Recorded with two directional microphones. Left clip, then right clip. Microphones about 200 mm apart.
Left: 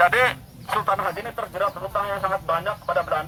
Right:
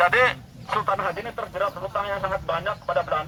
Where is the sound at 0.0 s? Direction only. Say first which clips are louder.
Left 1 dB; 35° left (ahead or behind).